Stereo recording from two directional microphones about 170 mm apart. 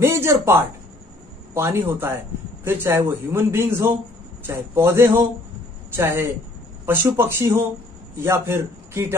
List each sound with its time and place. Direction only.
0.0 s a man's voice: 15° right (ahead or behind)